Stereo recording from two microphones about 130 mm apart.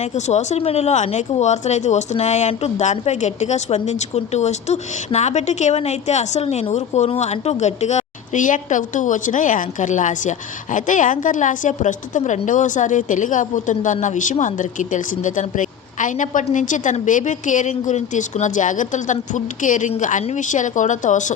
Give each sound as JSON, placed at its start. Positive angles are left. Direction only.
{"t": 0.0, "sound": "a woman's voice", "side_deg": 60}